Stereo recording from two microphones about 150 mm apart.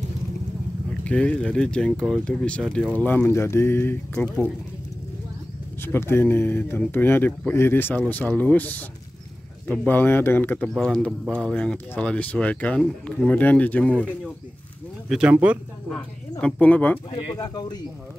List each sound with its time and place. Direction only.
1.0 s speech: 10° left (ahead or behind)
5.8 s speech: 15° left (ahead or behind)
15.0 s speech: 5° right (ahead or behind)
16.3 s speech: 10° left (ahead or behind)
17.4 s speech: 25° left (ahead or behind)